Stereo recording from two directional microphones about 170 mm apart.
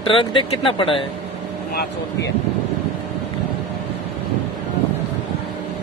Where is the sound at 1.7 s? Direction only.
70° left (ahead or behind).